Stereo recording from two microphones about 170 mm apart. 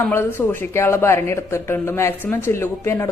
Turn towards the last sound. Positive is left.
turn(degrees=15)  # may be behind; listen again after turning